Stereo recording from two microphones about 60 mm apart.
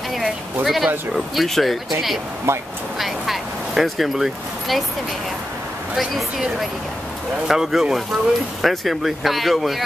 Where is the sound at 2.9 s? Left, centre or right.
Centre.